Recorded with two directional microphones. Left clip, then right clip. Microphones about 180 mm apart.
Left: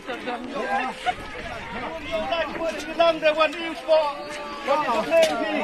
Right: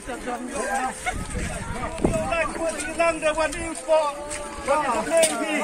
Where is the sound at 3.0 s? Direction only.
20° right (ahead or behind).